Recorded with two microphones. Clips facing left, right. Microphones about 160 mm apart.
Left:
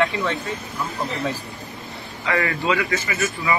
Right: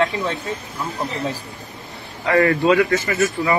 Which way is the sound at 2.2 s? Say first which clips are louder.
Right 7 dB; 40° right (ahead or behind).